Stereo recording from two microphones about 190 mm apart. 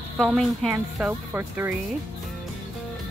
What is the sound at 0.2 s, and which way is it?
Speech, centre (ahead or behind).